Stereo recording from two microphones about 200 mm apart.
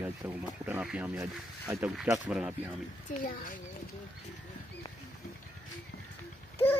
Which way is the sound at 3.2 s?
40° left (ahead or behind).